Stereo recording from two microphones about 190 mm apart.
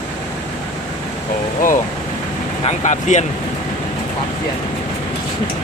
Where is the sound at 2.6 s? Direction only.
40° left (ahead or behind).